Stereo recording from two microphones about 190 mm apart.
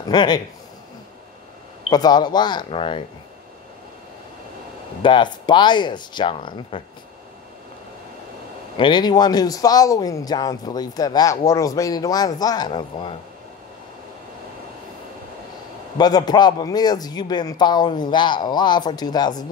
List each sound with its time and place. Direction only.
0.0 s a man's voice: 20° left (ahead or behind)
1.9 s speech: 20° left (ahead or behind)
5.0 s speech: 25° left (ahead or behind)
8.7 s speech: 25° left (ahead or behind)
16.0 s speech: 20° left (ahead or behind)